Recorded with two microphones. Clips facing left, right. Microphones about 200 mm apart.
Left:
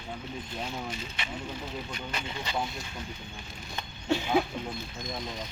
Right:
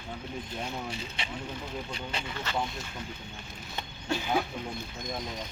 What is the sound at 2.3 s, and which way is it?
Speech, 15° left (ahead or behind).